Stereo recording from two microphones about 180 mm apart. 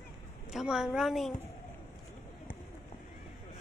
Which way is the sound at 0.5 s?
5° right (ahead or behind).